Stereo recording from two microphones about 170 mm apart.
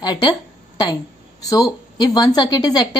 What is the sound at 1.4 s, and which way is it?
A woman's voice, 20° left (ahead or behind).